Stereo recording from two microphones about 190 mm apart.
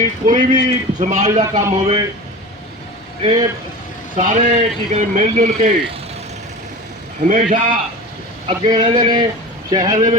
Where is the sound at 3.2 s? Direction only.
20° right (ahead or behind).